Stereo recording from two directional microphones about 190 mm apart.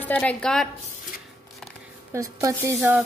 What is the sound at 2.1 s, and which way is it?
Speech, 15° right (ahead or behind).